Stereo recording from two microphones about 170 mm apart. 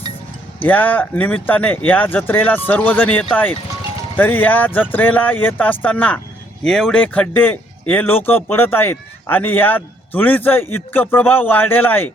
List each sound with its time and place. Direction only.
0.6 s speech: 10° left (ahead or behind)